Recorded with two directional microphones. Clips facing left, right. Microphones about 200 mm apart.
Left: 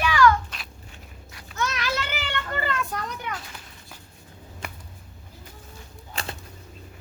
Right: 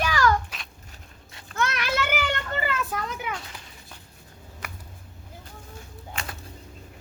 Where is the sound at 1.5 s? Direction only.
60° right (ahead or behind).